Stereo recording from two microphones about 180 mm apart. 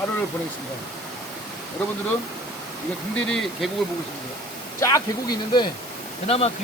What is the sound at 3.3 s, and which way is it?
Speech, centre (ahead or behind).